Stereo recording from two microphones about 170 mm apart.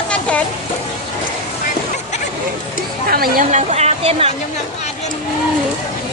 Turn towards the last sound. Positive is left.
turn(degrees=-35)  # may be behind; listen again after turning